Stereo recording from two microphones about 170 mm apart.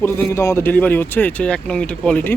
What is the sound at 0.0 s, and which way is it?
Speech, 15° left (ahead or behind).